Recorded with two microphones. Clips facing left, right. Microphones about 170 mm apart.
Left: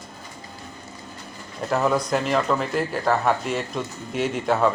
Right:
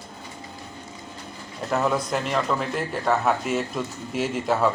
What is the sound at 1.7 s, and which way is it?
Speech, centre (ahead or behind).